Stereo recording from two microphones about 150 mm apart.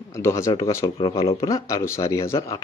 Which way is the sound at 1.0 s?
40° left (ahead or behind).